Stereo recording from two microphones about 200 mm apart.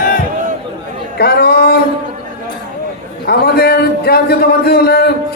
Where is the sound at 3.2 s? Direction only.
50° left (ahead or behind).